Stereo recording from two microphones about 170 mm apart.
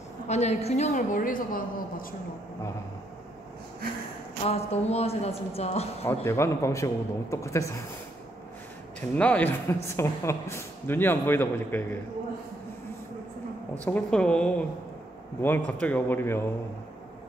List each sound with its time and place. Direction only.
0.3 s a woman's voice: 40° left (ahead or behind); by 2.0 s 55° left (ahead or behind)
4.5 s a woman's voice: 40° left (ahead or behind)
6.2 s a woman's voice: 15° left (ahead or behind)
9.1 s a woman's voice: 10° left (ahead or behind)
13.8 s a woman's voice: 5° left (ahead or behind)